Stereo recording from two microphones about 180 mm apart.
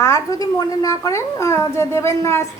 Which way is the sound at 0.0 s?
15° left (ahead or behind).